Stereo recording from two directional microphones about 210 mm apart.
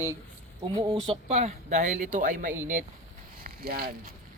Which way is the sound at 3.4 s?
45° right (ahead or behind).